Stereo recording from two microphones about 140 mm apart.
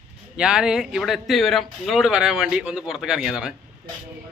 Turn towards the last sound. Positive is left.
turn(degrees=-5)  # may be behind; listen again after turning